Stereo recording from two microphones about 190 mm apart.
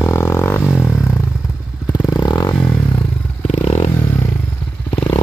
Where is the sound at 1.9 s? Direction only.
20° left (ahead or behind).